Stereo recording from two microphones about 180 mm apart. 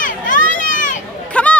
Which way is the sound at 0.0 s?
45° left (ahead or behind).